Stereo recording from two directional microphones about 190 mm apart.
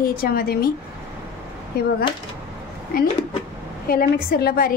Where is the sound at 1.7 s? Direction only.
55° left (ahead or behind).